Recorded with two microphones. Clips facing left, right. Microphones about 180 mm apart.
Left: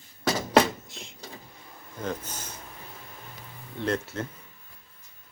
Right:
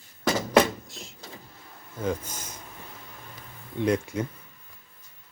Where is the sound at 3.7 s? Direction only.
15° right (ahead or behind).